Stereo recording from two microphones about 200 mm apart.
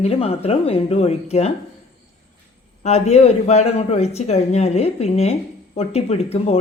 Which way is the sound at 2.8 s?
35° left (ahead or behind).